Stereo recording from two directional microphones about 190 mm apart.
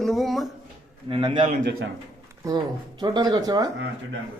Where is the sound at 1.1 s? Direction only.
25° right (ahead or behind).